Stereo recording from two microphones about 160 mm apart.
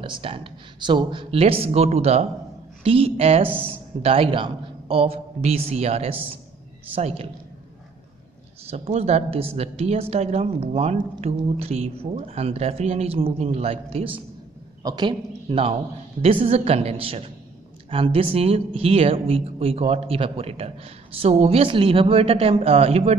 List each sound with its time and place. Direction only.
0.0 s speech: 30° right (ahead or behind)
8.6 s speech: 40° right (ahead or behind)
14.8 s speech: 25° right (ahead or behind)